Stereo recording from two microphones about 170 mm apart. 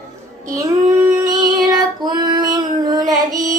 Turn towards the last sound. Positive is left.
turn(degrees=-20)  # may be behind; listen again after turning